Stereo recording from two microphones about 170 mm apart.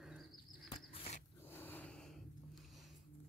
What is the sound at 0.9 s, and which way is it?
Dog, 35° left (ahead or behind).